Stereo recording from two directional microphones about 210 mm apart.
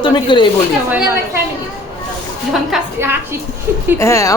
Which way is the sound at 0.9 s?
10° right (ahead or behind).